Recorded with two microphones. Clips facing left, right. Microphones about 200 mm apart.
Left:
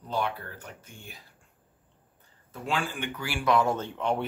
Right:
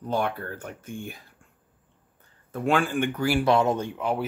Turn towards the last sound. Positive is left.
turn(degrees=-5)  # may be behind; listen again after turning